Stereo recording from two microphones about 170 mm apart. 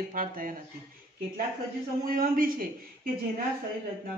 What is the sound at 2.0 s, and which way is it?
Speech, 55° right (ahead or behind).